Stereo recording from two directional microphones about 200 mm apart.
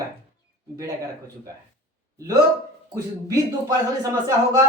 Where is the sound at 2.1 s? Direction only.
15° right (ahead or behind).